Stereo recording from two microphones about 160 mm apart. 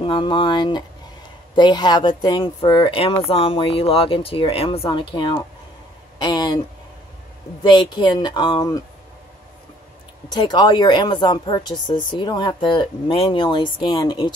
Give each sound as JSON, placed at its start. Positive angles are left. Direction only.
{"t": 0.0, "sound": "speech", "side_deg": 30}
{"t": 7.6, "sound": "speech", "side_deg": 30}
{"t": 10.3, "sound": "speech", "side_deg": 30}